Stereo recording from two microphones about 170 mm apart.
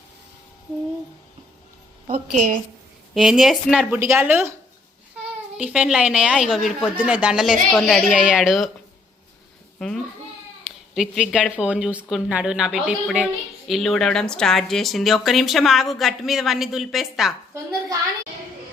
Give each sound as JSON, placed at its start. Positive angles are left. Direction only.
{"t": 2.0, "sound": "a woman's voice", "side_deg": -50}
{"t": 3.2, "sound": "speech", "side_deg": 0}
{"t": 5.5, "sound": "speech", "side_deg": -5}
{"t": 9.7, "sound": "a child's voice", "side_deg": 5}